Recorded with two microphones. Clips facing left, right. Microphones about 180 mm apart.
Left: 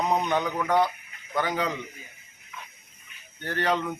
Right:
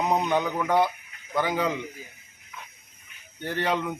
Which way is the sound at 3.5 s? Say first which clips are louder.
Even; 10° right (ahead or behind).